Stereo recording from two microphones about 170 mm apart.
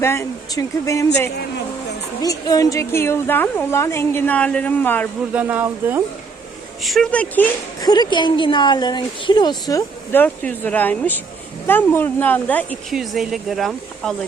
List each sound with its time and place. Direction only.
0.0 s a woman's voice: 15° left (ahead or behind)
5.3 s speech: 10° right (ahead or behind)
6.8 s speech: centre (ahead or behind)
7.8 s a woman's voice: 25° left (ahead or behind)
12.9 s speech: centre (ahead or behind)